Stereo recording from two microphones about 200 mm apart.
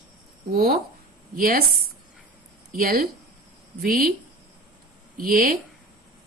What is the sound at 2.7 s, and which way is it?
Speech, 45° right (ahead or behind).